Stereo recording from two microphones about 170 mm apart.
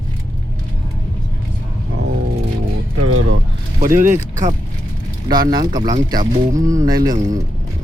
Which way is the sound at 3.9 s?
50° right (ahead or behind).